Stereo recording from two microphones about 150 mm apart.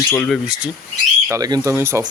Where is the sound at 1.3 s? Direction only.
25° right (ahead or behind).